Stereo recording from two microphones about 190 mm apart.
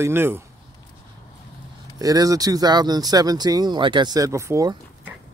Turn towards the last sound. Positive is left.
turn(degrees=-15)  # may be behind; listen again after turning